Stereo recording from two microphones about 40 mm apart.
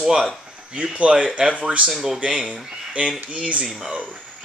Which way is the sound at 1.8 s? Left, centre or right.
Centre.